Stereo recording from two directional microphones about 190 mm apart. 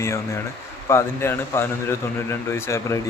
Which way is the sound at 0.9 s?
15° left (ahead or behind).